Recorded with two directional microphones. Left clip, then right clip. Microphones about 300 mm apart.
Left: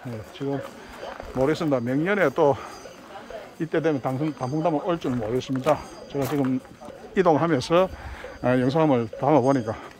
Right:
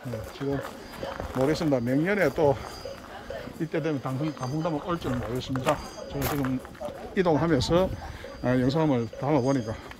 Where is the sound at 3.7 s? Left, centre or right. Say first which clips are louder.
Left 6 dB; centre.